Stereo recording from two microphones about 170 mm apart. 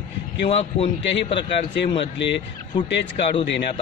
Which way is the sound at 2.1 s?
90° left.